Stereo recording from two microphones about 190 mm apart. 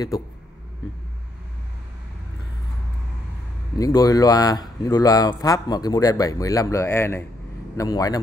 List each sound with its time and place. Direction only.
3.7 s speech: 20° left (ahead or behind)